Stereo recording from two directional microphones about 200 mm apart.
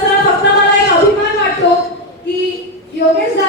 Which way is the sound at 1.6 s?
60° left (ahead or behind).